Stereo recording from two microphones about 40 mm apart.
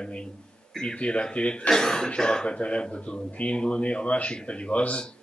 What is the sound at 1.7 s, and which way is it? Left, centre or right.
Speech, centre.